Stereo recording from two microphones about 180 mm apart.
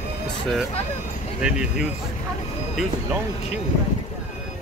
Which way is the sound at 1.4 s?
5° right (ahead or behind).